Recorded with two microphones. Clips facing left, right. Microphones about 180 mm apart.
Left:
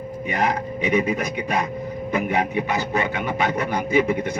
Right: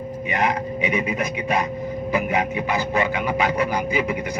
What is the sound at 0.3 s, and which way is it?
Speech, 40° left (ahead or behind).